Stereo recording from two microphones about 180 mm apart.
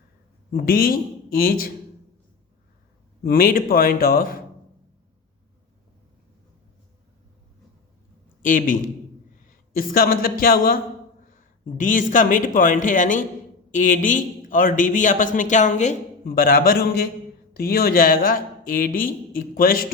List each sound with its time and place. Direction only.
0.5 s a man's voice: 55° left (ahead or behind)
3.2 s a man's voice: 55° left (ahead or behind)
8.4 s a man's voice: 45° left (ahead or behind)
11.8 s a man's voice: 45° left (ahead or behind)